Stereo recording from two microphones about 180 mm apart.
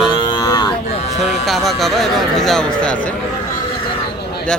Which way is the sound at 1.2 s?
Centre (ahead or behind).